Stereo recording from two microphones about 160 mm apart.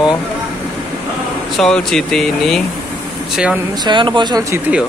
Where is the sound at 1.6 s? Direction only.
5° left (ahead or behind).